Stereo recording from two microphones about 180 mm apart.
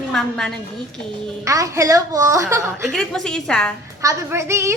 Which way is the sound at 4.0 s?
15° right (ahead or behind).